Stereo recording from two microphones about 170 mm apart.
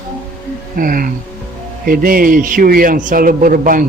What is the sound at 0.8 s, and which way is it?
A man's voice, 55° right (ahead or behind).